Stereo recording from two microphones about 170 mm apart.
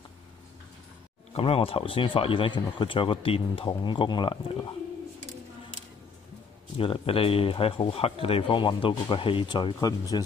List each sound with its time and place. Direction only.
1.3 s speech: 35° left (ahead or behind)
6.8 s speech: 30° left (ahead or behind)